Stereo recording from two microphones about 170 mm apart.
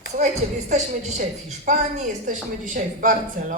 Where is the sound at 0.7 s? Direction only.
45° right (ahead or behind).